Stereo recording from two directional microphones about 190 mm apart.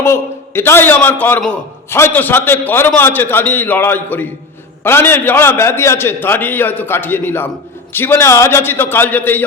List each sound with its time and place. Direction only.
0.0 s a man's voice: 10° left (ahead or behind)